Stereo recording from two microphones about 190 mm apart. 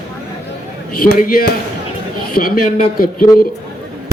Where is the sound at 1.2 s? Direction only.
50° left (ahead or behind).